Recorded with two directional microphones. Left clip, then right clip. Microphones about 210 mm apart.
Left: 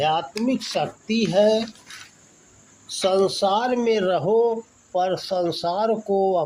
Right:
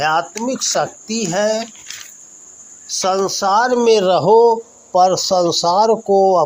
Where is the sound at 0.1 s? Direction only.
65° right (ahead or behind).